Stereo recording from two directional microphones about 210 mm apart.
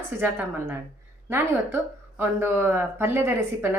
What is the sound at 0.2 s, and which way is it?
A woman's voice, 10° right (ahead or behind).